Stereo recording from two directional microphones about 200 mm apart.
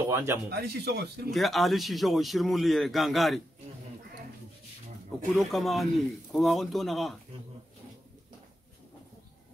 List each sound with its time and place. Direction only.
0.1 s speech: 15° right (ahead or behind)
0.5 s speech: 55° right (ahead or behind)
1.3 s a man's voice: centre (ahead or behind)
5.3 s a man's voice: centre (ahead or behind)